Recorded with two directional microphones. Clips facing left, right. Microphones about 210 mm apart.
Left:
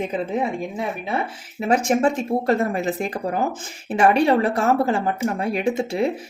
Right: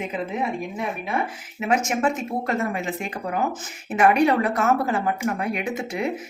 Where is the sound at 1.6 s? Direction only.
35° left (ahead or behind).